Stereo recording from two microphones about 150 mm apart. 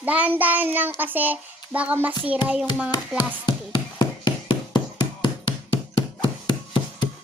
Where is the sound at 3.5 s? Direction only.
30° left (ahead or behind).